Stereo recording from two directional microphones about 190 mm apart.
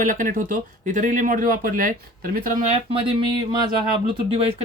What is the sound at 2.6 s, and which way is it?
Speech, 25° right (ahead or behind).